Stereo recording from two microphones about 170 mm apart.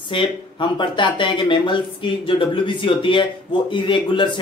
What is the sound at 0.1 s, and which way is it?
Speech, 30° left (ahead or behind).